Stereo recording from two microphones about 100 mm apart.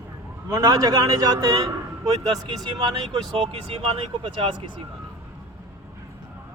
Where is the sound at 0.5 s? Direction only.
35° right (ahead or behind).